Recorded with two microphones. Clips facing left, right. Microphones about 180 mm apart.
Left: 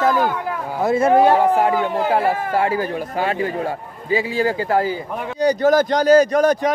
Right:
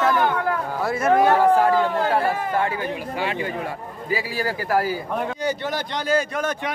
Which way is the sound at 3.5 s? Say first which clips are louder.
Left 5 dB; 25° left (ahead or behind).